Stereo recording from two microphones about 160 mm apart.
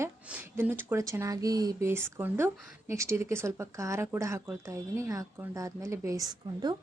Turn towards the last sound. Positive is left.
turn(degrees=-25)  # may be behind; listen again after turning